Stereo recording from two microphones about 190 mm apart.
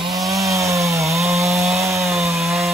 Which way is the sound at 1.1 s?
Centre (ahead or behind).